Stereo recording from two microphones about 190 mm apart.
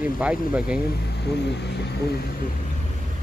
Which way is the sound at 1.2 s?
60° left (ahead or behind).